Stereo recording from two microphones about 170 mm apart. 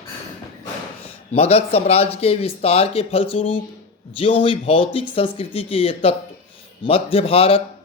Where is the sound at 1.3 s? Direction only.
35° left (ahead or behind).